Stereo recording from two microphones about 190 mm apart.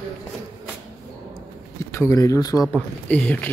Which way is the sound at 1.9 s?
15° left (ahead or behind).